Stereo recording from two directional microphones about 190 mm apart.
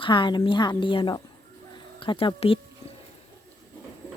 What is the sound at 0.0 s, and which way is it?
A woman's voice, 25° left (ahead or behind).